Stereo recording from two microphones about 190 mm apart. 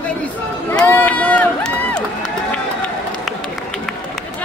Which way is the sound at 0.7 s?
10° left (ahead or behind).